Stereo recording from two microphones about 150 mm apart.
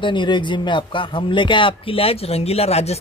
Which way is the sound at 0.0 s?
30° left (ahead or behind).